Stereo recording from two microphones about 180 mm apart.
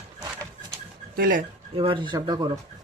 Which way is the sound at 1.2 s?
50° right (ahead or behind).